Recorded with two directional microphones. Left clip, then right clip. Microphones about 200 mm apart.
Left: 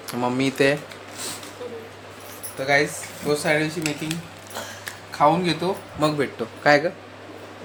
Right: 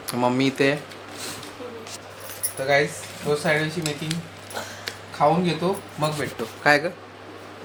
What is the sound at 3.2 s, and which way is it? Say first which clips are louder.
Speech: left 1 dB; 5° left (ahead or behind).